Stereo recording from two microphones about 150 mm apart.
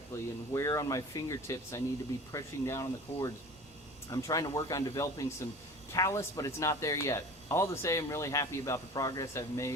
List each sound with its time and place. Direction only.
0.5 s speech: 20° left (ahead or behind)